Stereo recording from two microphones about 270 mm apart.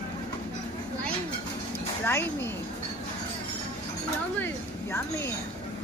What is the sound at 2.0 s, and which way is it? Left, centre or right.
Speech, centre.